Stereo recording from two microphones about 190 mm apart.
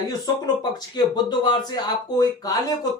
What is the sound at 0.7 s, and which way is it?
Speech, 20° left (ahead or behind).